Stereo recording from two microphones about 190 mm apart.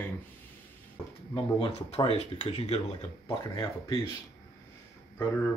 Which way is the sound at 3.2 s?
20° left (ahead or behind).